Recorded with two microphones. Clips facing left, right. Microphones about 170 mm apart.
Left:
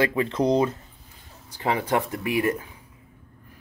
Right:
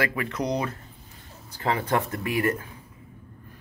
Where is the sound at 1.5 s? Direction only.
15° left (ahead or behind).